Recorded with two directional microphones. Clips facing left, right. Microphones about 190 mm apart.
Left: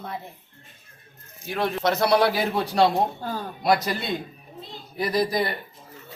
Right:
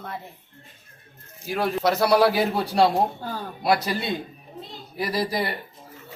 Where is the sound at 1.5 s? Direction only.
5° right (ahead or behind).